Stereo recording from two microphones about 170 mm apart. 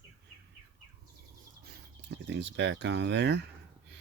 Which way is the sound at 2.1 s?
90° right.